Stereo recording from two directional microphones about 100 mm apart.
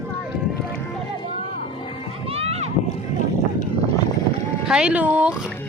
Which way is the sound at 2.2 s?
85° right.